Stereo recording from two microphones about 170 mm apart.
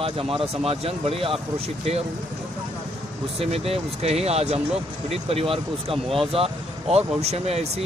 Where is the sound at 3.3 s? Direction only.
35° right (ahead or behind).